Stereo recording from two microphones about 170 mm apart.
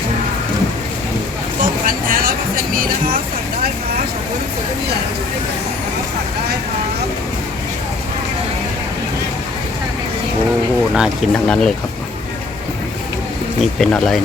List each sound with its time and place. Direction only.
1.6 s vehicle: 55° right (ahead or behind)
2.7 s music: 55° right (ahead or behind)
10.9 s speech: 5° right (ahead or behind)
13.6 s speech: 5° left (ahead or behind)